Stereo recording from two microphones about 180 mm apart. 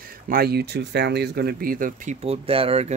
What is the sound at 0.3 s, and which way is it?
Speech, 60° right (ahead or behind).